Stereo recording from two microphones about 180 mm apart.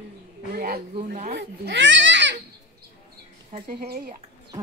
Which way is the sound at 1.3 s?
85° right.